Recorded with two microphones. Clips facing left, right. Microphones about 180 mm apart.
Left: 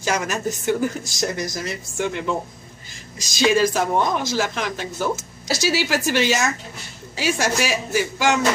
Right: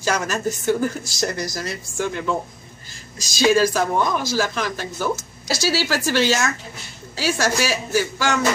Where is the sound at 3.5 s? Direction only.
20° left (ahead or behind).